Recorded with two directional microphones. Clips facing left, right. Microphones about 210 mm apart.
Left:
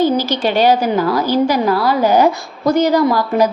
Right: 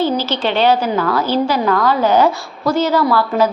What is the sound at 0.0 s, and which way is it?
A woman's voice, 15° left (ahead or behind).